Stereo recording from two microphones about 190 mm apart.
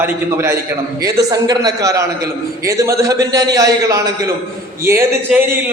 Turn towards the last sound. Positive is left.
turn(degrees=0)  # may be behind; listen again after turning